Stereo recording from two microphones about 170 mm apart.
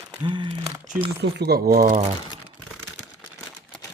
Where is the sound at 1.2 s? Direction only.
75° right (ahead or behind).